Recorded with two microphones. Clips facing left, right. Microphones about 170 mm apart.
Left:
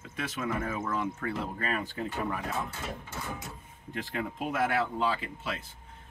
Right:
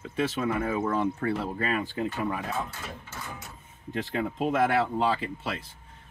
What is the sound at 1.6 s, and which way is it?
Speech, 40° left (ahead or behind).